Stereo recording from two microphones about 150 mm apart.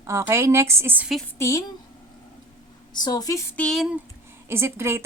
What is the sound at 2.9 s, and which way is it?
Speech, 30° left (ahead or behind).